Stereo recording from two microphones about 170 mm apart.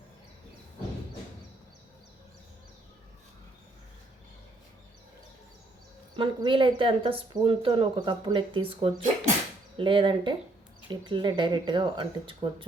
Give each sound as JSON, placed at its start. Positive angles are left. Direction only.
{"t": 6.1, "sound": "speech", "side_deg": -30}